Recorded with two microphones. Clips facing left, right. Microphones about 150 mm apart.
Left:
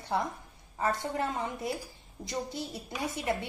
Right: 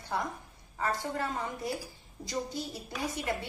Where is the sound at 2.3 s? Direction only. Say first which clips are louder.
Even; 25° left (ahead or behind).